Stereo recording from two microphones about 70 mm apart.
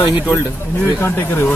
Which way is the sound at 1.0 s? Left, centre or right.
Left.